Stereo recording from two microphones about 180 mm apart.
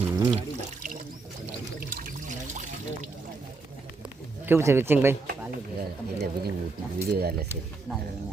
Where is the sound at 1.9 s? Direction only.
50° right (ahead or behind).